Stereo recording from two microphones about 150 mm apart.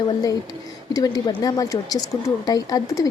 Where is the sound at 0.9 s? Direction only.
25° left (ahead or behind).